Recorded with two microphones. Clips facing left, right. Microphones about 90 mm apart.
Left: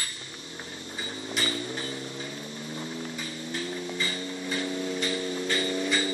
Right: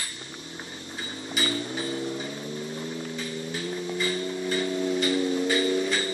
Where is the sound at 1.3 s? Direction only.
10° right (ahead or behind).